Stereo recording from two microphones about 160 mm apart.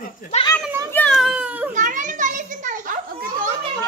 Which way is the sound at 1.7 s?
55° right (ahead or behind).